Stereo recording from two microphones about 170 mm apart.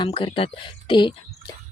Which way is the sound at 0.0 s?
30° left (ahead or behind).